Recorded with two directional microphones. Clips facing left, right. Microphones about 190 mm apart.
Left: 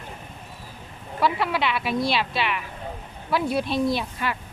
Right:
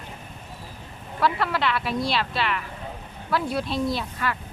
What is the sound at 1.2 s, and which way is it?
A woman's voice, 10° left (ahead or behind).